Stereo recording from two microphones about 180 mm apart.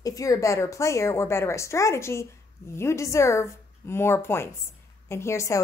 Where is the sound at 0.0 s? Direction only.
20° left (ahead or behind).